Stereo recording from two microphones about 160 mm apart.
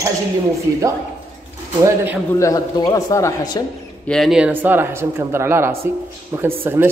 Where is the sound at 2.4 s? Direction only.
20° left (ahead or behind).